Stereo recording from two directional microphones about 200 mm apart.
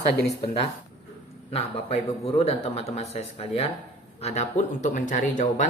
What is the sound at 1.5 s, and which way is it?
A man's voice, 30° left (ahead or behind).